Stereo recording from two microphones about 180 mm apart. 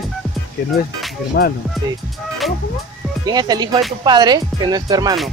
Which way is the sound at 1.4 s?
60° left (ahead or behind).